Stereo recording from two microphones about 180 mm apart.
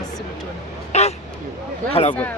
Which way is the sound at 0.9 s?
35° left (ahead or behind).